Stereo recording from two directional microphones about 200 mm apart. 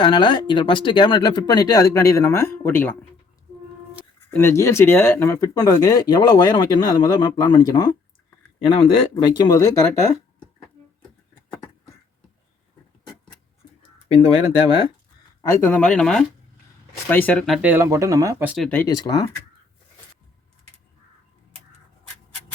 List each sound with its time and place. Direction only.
0.0 s speech: 20° left (ahead or behind)
4.4 s speech: 15° left (ahead or behind)
14.7 s speech: 25° left (ahead or behind)
15.4 s speech: 5° left (ahead or behind); by 18.5 s 15° right (ahead or behind)
18.5 s speech: 5° left (ahead or behind)